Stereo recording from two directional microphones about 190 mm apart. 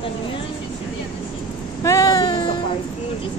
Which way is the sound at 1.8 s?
15° left (ahead or behind).